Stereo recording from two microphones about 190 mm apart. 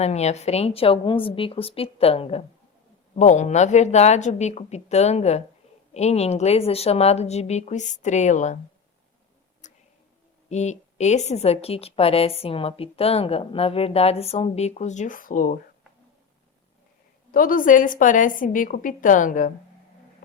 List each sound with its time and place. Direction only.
0.0 s a woman's voice: 35° left (ahead or behind)
9.6 s a sound: 40° left (ahead or behind)
10.5 s a woman's voice: 35° left (ahead or behind)
17.3 s a woman's voice: 45° left (ahead or behind)